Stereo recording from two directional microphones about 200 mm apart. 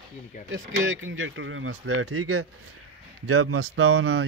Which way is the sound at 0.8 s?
80° right.